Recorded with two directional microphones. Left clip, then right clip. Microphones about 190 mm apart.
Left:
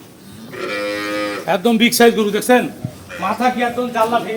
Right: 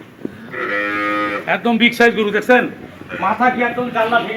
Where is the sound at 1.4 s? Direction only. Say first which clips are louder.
Left 1 dB; 65° left (ahead or behind).